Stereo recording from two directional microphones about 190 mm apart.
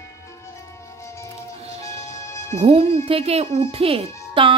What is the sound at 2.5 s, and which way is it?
Speech, 30° right (ahead or behind).